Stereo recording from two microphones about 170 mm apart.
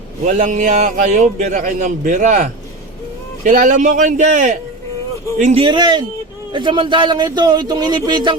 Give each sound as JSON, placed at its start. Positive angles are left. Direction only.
{"t": 0.3, "sound": "a man's voice", "side_deg": -45}
{"t": 5.6, "sound": "speech", "side_deg": -25}